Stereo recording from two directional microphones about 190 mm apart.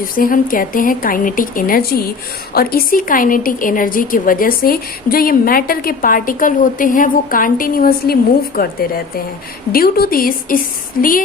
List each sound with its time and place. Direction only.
0.0 s a woman's voice: 45° left (ahead or behind)